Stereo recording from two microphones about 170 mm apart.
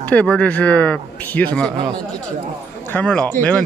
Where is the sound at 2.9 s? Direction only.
10° left (ahead or behind).